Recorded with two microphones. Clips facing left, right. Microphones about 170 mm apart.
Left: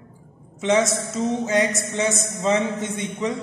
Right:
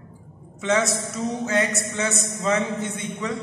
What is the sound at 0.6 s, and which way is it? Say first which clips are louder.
A woman's voice: left 3 dB; 20° left (ahead or behind).